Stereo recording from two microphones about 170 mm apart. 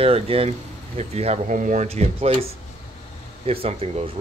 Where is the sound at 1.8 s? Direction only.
35° right (ahead or behind).